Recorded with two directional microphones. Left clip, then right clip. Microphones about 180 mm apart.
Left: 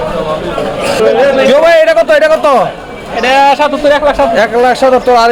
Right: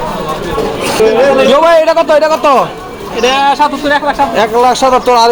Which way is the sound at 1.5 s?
15° left (ahead or behind).